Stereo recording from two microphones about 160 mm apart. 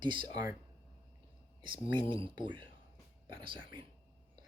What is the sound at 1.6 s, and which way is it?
Speech, 30° right (ahead or behind).